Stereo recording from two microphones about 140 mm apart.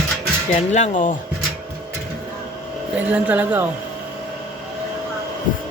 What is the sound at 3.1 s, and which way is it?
Speech, 10° right (ahead or behind).